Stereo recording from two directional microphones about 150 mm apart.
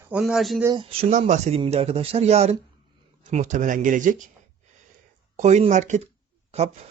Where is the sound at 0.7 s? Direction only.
35° right (ahead or behind).